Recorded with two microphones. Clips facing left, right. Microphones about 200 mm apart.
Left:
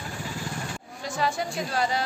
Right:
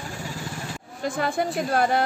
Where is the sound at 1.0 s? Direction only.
55° right (ahead or behind).